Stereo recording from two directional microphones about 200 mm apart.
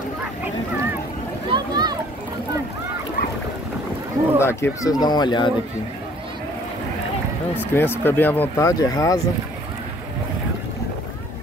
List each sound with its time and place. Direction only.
1.5 s a sound: 20° right (ahead or behind)
4.4 s speech: 15° left (ahead or behind)
7.5 s speech: 10° left (ahead or behind)